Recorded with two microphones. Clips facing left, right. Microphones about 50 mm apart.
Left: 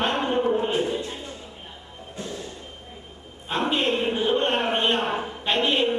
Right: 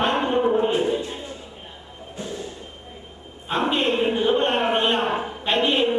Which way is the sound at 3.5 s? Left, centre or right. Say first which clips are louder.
Right 2 dB; centre.